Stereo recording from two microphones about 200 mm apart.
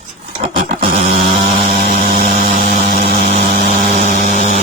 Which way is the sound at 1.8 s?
45° right (ahead or behind).